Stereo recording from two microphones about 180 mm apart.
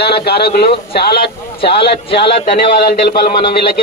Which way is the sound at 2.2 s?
30° left (ahead or behind).